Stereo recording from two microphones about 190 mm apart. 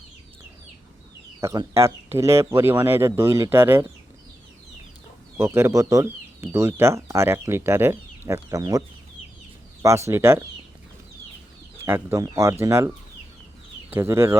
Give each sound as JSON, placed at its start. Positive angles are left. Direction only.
{"t": 1.4, "sound": "speech", "side_deg": -15}
{"t": 5.4, "sound": "speech", "side_deg": -15}
{"t": 9.8, "sound": "speech", "side_deg": -15}
{"t": 11.9, "sound": "speech", "side_deg": -15}
{"t": 13.9, "sound": "speech", "side_deg": -15}